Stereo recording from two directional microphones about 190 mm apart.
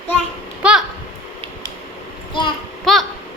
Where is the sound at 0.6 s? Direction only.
5° right (ahead or behind).